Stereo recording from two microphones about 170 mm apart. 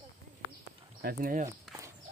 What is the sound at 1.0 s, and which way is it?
Speech, 60° right (ahead or behind).